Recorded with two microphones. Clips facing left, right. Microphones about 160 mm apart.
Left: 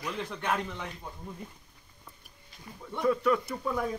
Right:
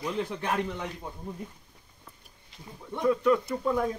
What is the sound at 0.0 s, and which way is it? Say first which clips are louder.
Speech: right 5 dB; 25° right (ahead or behind).